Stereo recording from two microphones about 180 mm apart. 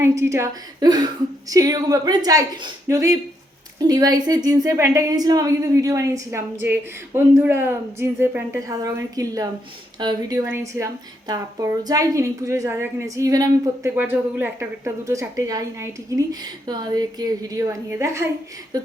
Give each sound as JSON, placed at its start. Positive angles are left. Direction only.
{"t": 0.2, "sound": "a woman's voice", "side_deg": -15}